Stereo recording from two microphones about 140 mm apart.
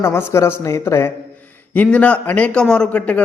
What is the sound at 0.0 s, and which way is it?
A man's voice, 20° left (ahead or behind).